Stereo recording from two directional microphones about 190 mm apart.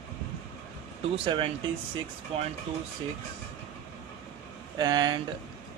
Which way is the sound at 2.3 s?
30° right (ahead or behind).